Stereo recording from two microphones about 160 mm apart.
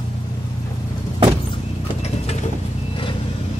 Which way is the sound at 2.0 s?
45° left (ahead or behind).